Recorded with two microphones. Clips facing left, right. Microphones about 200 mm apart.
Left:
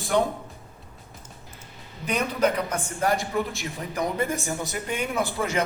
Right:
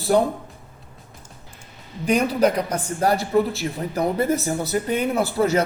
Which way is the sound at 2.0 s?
35° right (ahead or behind).